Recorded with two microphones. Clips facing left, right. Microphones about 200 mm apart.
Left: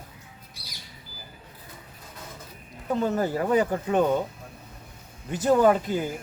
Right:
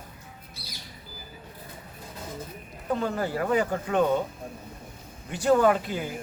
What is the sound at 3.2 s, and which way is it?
Speech, 20° left (ahead or behind).